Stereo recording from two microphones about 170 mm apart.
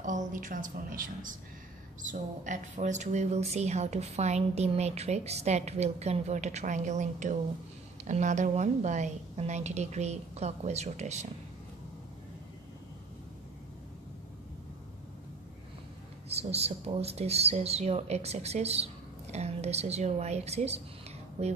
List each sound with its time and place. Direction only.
0.0 s a woman's voice: 50° right (ahead or behind)
16.3 s speech: 35° right (ahead or behind)